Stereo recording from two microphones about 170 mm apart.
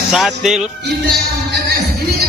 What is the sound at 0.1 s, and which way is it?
Speech, centre (ahead or behind).